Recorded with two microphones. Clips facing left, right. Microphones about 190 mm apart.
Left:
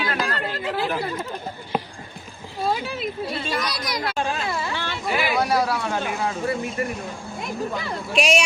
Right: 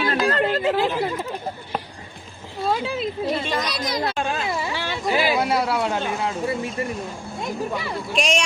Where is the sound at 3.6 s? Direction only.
25° right (ahead or behind).